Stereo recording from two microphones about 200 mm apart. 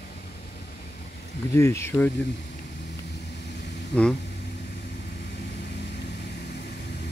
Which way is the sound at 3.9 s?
5° left (ahead or behind).